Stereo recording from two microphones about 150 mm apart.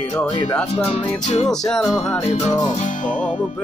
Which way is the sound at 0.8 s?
50° left (ahead or behind).